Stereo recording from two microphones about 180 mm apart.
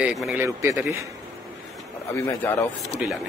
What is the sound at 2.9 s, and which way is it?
Speech, centre (ahead or behind).